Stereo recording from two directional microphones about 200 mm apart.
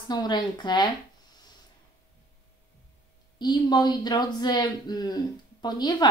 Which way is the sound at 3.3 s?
20° left (ahead or behind).